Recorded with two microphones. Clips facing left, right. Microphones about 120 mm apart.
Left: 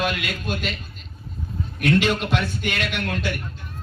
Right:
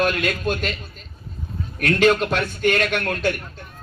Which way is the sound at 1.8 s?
45° right (ahead or behind).